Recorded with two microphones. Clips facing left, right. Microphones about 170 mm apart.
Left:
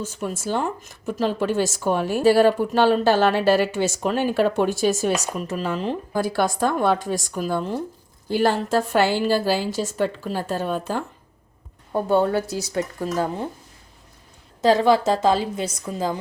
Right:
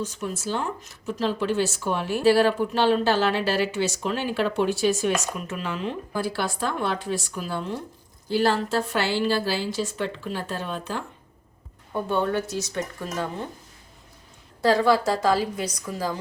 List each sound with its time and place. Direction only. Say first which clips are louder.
0.5 s speech: left 4 dB; 50° left (ahead or behind); by 12.8 s 35° left (ahead or behind)
14.6 s a woman's voice: left 3 dB; 20° left (ahead or behind)